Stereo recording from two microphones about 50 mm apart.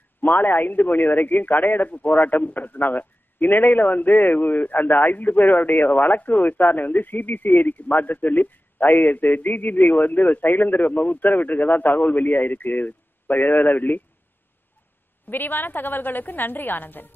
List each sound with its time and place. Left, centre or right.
0.4 s a man's voice: left
15.2 s a man's voice: left